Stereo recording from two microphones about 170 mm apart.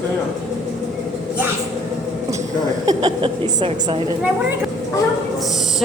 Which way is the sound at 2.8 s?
25° right (ahead or behind).